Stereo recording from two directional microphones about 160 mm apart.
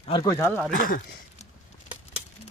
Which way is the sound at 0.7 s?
60° left (ahead or behind).